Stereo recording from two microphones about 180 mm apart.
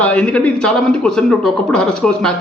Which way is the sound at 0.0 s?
5° left (ahead or behind).